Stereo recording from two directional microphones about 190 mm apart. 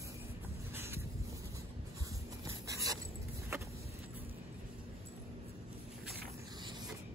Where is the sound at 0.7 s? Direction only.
10° right (ahead or behind).